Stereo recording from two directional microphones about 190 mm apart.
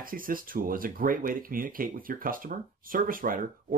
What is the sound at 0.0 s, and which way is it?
Speech, 50° right (ahead or behind).